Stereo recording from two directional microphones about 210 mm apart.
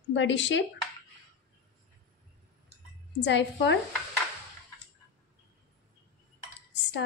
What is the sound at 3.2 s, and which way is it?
Speech, 55° left (ahead or behind).